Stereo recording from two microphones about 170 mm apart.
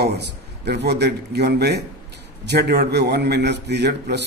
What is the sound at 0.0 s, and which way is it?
A man's voice, 75° right (ahead or behind).